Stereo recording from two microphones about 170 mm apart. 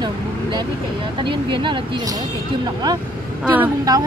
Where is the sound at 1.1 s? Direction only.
30° right (ahead or behind).